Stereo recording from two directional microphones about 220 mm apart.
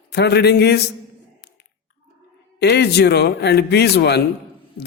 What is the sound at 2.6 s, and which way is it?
A man's voice, 50° left (ahead or behind).